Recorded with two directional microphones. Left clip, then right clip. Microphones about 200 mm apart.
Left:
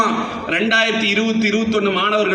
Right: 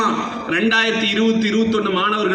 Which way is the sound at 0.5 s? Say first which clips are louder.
Left 1 dB; 30° left (ahead or behind).